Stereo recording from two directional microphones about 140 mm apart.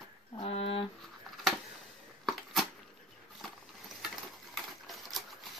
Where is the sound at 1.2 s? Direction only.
Centre (ahead or behind).